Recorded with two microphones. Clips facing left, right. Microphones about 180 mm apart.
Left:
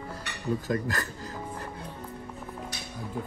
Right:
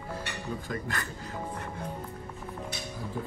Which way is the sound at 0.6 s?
40° left (ahead or behind).